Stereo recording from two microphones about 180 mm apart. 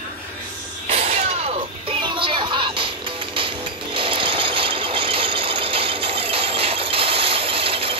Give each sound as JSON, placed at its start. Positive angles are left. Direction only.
{"t": 0.8, "sound": "music", "side_deg": -35}
{"t": 3.3, "sound": "jackhammer", "side_deg": -30}